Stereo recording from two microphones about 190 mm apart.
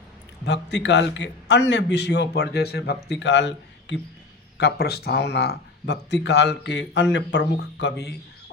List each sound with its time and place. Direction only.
0.4 s speech: 65° left (ahead or behind)
4.5 s speech: 60° left (ahead or behind)